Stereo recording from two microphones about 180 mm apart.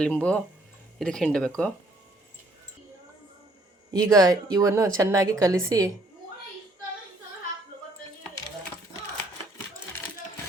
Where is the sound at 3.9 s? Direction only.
20° right (ahead or behind).